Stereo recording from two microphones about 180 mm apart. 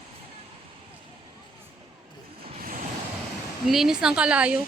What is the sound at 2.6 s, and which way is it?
Waves, 50° right (ahead or behind).